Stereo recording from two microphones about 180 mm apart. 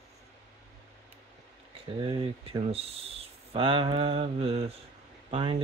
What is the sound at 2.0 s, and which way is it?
Speech, 30° right (ahead or behind).